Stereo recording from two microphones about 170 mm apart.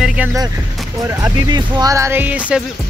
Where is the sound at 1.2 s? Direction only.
25° right (ahead or behind); by 2.6 s 10° right (ahead or behind).